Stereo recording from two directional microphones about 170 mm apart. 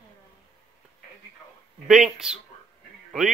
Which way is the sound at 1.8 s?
5° right (ahead or behind).